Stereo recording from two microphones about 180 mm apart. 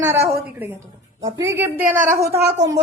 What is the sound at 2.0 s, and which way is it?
Speech, 45° right (ahead or behind).